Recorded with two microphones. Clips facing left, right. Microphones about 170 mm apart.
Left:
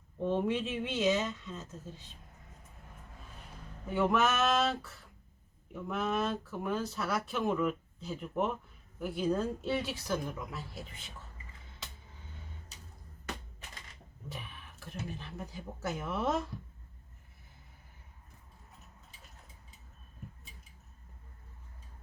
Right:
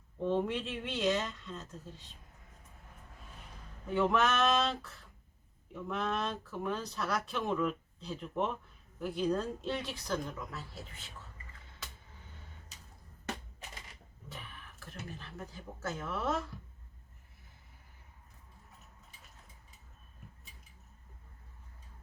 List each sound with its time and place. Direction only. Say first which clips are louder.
0.2 s speech: left 1 dB; 10° left (ahead or behind)
3.8 s speech: left 1 dB; 5° left (ahead or behind)
14.8 s speech: left 5 dB; 15° left (ahead or behind)